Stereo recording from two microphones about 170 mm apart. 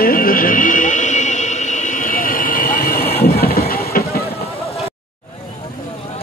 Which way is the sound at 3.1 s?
70° left (ahead or behind).